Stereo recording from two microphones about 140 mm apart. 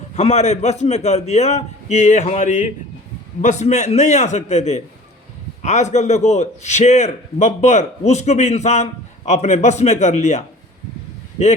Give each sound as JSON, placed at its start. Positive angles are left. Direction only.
{"t": 0.2, "sound": "a man's voice", "side_deg": 50}